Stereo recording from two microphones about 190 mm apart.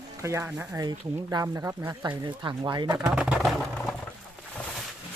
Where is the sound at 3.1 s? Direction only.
5° right (ahead or behind).